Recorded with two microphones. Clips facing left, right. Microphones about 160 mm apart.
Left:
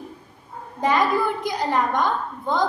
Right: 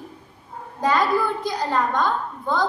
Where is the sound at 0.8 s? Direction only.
20° left (ahead or behind).